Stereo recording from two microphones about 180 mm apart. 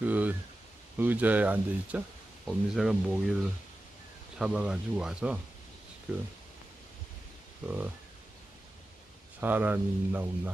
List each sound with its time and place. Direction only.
0.0 s speech: 10° right (ahead or behind)
7.6 s speech: 10° right (ahead or behind)
9.4 s speech: 10° right (ahead or behind)